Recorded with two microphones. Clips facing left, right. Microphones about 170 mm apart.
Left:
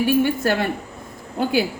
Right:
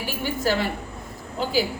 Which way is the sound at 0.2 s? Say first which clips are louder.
Left 5 dB; 60° left (ahead or behind).